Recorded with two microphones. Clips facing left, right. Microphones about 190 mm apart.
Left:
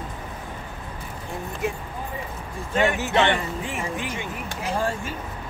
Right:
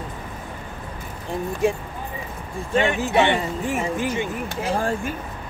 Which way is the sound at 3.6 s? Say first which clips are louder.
Right 6 dB; 45° right (ahead or behind).